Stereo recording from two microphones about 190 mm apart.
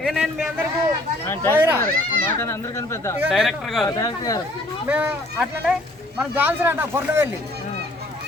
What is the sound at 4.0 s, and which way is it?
Speech, 20° left (ahead or behind).